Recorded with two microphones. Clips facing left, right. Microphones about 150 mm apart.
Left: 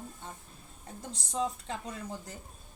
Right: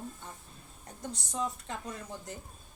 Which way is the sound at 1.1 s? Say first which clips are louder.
Left 3 dB; 30° left (ahead or behind).